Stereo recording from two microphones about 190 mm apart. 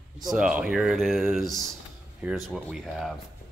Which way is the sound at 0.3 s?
5° right (ahead or behind).